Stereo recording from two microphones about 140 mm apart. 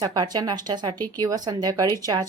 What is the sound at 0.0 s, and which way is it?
Speech, 25° right (ahead or behind).